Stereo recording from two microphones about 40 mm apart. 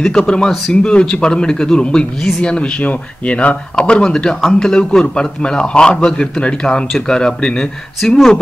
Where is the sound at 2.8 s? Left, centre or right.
Left.